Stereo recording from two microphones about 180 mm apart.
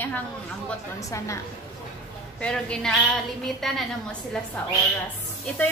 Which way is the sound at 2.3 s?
5° left (ahead or behind).